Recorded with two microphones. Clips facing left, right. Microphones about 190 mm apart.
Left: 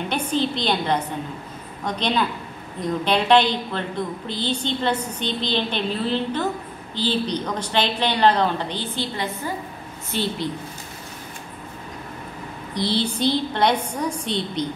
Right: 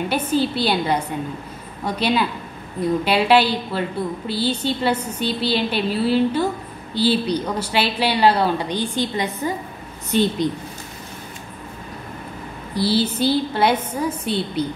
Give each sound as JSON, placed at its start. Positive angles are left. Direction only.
{"t": 0.1, "sound": "a woman's voice", "side_deg": -5}
{"t": 12.7, "sound": "a woman's voice", "side_deg": -5}